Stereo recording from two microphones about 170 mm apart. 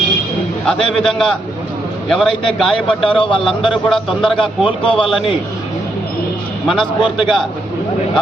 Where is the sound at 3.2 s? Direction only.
30° left (ahead or behind).